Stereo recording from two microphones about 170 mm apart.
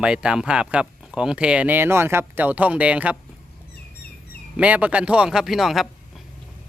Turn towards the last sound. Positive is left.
turn(degrees=0)  # may be behind; listen again after turning